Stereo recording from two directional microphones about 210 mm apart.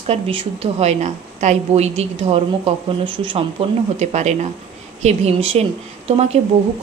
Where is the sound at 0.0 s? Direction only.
25° right (ahead or behind).